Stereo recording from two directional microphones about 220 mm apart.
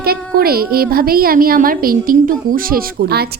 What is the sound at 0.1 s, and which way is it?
A woman's voice, 45° right (ahead or behind).